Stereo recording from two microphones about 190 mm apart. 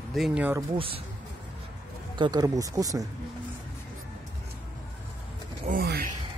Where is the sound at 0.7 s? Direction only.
30° right (ahead or behind).